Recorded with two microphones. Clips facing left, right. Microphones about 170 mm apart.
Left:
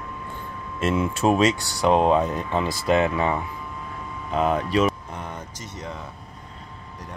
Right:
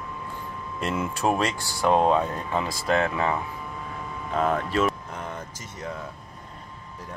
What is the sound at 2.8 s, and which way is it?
Speech, 15° left (ahead or behind).